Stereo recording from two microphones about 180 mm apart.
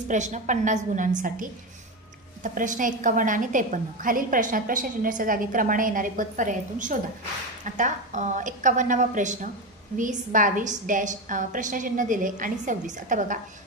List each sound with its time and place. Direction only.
0.1 s a woman's voice: 40° right (ahead or behind)